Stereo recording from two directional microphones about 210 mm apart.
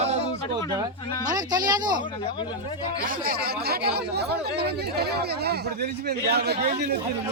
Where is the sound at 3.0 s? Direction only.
40° right (ahead or behind).